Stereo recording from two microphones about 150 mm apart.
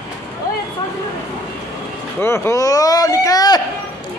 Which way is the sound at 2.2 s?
15° left (ahead or behind).